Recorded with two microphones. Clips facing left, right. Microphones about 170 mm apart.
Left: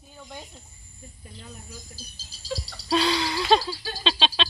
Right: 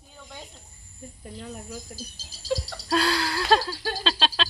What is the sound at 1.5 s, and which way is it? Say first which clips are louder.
Bird: right 6 dB; 45° right (ahead or behind).